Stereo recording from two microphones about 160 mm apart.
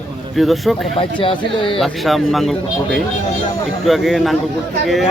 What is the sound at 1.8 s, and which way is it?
A man's voice, centre (ahead or behind).